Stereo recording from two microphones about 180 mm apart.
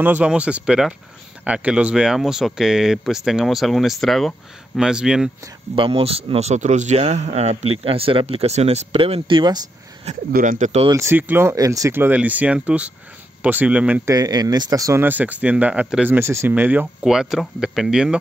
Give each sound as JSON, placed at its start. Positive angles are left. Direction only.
{"t": 0.0, "sound": "speech", "side_deg": -10}
{"t": 5.8, "sound": "speech", "side_deg": -30}
{"t": 10.3, "sound": "speech", "side_deg": -50}
{"t": 10.9, "sound": "speech", "side_deg": -15}
{"t": 14.1, "sound": "speech", "side_deg": -20}